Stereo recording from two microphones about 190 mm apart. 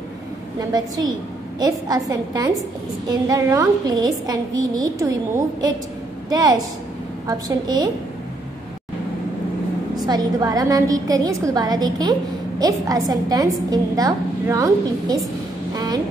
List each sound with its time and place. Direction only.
0.6 s a woman's voice: 20° right (ahead or behind)
7.2 s a woman's voice: 20° right (ahead or behind)
9.9 s a woman's voice: 20° right (ahead or behind)
15.7 s a sound: 20° right (ahead or behind)